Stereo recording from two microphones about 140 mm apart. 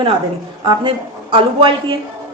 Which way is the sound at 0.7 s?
40° right (ahead or behind).